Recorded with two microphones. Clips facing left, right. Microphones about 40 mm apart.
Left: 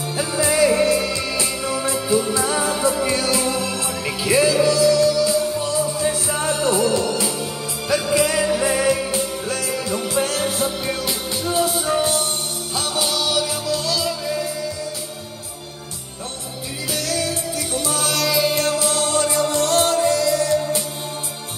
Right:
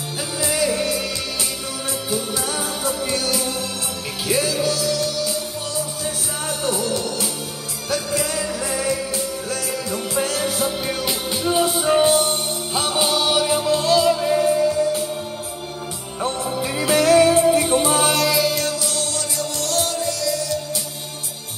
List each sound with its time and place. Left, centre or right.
0.2 s music: left
2.0 s music: left
9.9 s music: left
10.4 s music: centre
11.4 s music: centre; by 14.6 s right
16.8 s music: right
18.5 s music: left